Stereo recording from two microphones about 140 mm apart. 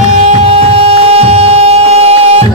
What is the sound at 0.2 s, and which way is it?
Music, 50° right (ahead or behind).